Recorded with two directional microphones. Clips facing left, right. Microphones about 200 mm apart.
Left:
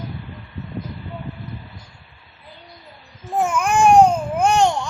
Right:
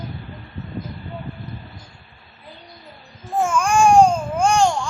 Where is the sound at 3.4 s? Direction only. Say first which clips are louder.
Even; 20° left (ahead or behind).